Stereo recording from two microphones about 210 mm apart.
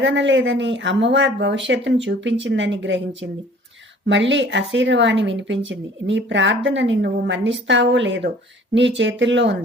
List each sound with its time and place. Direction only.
0.0 s speech: 60° right (ahead or behind)